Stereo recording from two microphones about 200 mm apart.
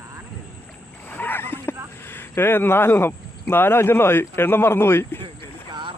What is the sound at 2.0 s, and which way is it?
Speech, 10° left (ahead or behind).